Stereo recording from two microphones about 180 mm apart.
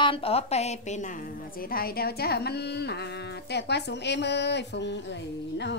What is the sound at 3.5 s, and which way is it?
A woman's voice, 70° left (ahead or behind).